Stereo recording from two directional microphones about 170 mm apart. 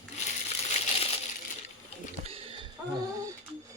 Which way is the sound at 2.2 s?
35° right (ahead or behind).